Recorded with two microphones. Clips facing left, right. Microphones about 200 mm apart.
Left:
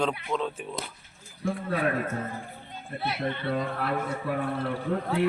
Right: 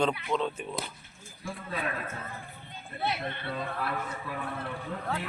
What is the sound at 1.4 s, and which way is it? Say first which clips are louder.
Speech: left 8 dB; 60° left (ahead or behind).